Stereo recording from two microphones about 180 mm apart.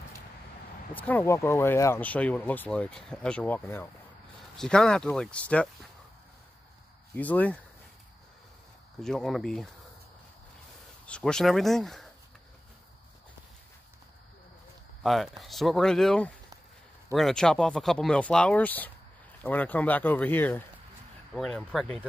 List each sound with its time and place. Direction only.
0.9 s speech: 10° left (ahead or behind)
7.2 s speech: 10° left (ahead or behind)
9.0 s speech: centre (ahead or behind)
11.1 s speech: 5° left (ahead or behind)
15.0 s speech: centre (ahead or behind)